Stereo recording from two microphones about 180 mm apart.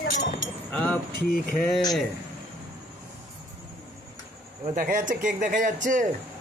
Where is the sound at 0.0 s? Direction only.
45° left (ahead or behind).